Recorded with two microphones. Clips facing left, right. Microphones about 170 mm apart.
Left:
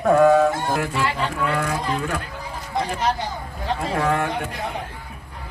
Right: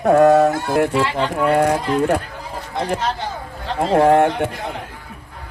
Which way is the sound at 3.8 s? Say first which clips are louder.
Right 10 dB; 50° right (ahead or behind).